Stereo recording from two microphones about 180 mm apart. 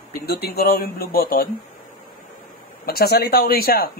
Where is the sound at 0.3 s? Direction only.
60° left (ahead or behind).